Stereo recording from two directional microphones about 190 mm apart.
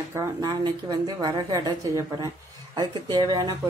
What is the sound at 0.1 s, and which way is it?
A woman's voice, 15° right (ahead or behind).